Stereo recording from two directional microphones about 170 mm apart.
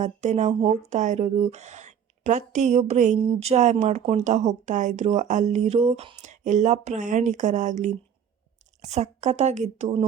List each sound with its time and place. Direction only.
0.0 s a woman's voice: 45° right (ahead or behind)